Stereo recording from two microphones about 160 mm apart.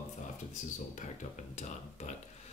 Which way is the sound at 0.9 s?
45° left (ahead or behind).